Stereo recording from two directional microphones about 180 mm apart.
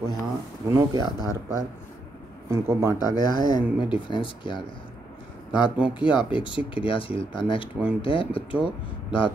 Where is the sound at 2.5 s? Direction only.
15° right (ahead or behind).